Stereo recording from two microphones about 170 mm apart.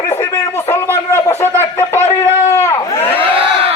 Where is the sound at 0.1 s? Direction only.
15° left (ahead or behind).